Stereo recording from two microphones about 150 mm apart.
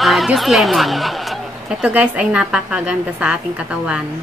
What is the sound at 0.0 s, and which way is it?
Speech, centre (ahead or behind).